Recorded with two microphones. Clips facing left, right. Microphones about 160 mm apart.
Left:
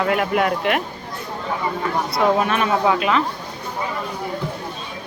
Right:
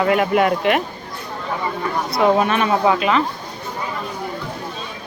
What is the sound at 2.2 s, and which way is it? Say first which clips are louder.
Speech: right 3 dB; centre (ahead or behind).